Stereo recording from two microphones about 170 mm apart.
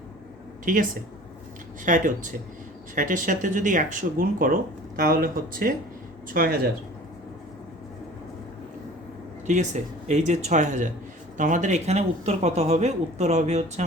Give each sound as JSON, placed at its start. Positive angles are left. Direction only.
{"t": 0.6, "sound": "speech", "side_deg": -50}
{"t": 9.5, "sound": "speech", "side_deg": -45}